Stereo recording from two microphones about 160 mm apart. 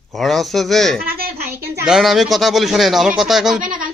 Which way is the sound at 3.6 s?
60° right (ahead or behind).